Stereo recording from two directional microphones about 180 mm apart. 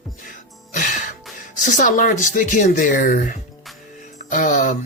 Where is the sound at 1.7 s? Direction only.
45° left (ahead or behind).